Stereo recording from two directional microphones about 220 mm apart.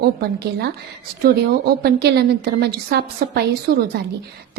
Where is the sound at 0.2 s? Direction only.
45° right (ahead or behind).